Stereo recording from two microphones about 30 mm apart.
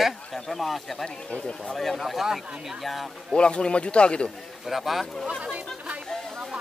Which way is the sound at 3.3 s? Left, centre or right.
Left.